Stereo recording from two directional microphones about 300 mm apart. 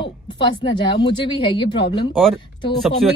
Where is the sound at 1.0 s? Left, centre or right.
Centre.